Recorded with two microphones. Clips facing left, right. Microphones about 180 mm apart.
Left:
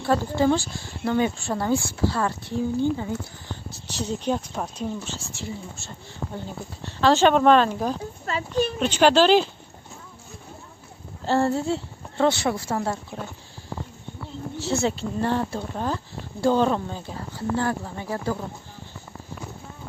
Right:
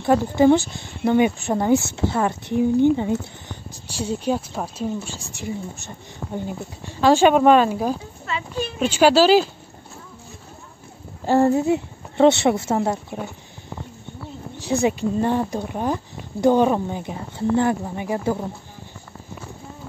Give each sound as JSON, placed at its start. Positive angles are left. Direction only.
{"t": 0.0, "sound": "speech", "side_deg": -15}
{"t": 8.3, "sound": "speech", "side_deg": 40}
{"t": 8.7, "sound": "speech", "side_deg": -5}
{"t": 11.2, "sound": "a woman's voice", "side_deg": -15}
{"t": 14.6, "sound": "speech", "side_deg": -15}